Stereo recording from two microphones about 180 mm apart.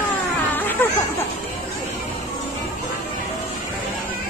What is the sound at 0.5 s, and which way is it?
Music, 10° left (ahead or behind).